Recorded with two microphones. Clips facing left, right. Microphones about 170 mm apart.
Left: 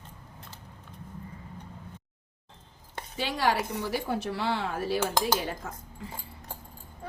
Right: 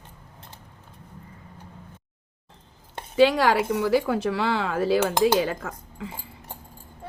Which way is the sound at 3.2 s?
90° right.